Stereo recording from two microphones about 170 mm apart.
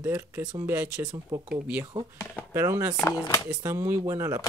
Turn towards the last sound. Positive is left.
turn(degrees=-15)  # may be behind; listen again after turning